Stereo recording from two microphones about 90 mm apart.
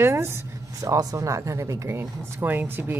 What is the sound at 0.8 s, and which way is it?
Speech, 40° right (ahead or behind).